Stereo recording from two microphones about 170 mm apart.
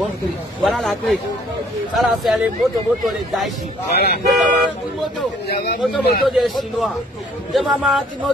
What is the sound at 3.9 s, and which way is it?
Speech, 70° left (ahead or behind).